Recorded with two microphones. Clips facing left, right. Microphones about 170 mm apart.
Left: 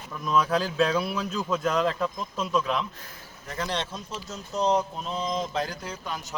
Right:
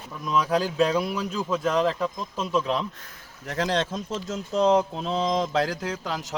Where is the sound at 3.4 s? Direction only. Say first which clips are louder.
Right 5 dB; 75° right (ahead or behind).